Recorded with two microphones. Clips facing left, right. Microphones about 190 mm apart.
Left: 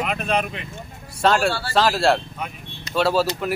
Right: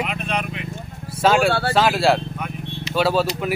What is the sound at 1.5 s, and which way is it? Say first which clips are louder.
Speech: right 6 dB; 60° right (ahead or behind).